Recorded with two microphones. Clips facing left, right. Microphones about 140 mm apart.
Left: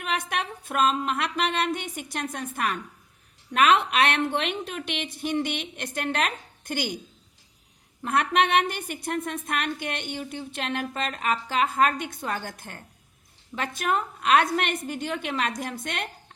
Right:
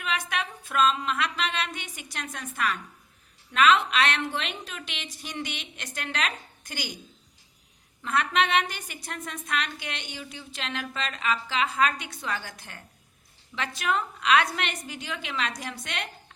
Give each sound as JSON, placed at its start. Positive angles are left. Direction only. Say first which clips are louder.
{"t": 0.0, "sound": "a woman's voice", "louder": "left 2 dB", "side_deg": 55}
{"t": 8.0, "sound": "a woman's voice", "louder": "left 3 dB", "side_deg": 55}